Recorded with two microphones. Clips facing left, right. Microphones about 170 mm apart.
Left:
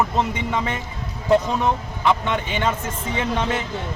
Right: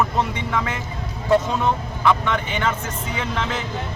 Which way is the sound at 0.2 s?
20° left (ahead or behind).